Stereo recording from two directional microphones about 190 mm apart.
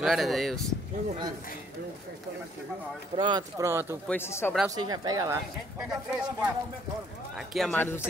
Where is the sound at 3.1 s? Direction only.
25° right (ahead or behind).